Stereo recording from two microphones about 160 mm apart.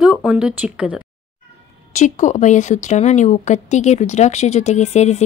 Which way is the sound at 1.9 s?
45° left (ahead or behind).